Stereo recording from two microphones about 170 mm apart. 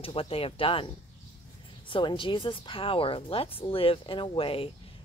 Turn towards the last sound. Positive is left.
turn(degrees=35)  # may be behind; listen again after turning